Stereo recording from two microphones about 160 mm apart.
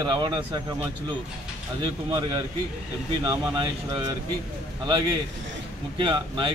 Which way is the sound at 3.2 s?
25° right (ahead or behind).